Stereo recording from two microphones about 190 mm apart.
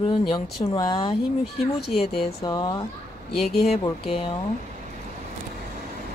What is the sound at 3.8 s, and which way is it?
Speech, 30° left (ahead or behind).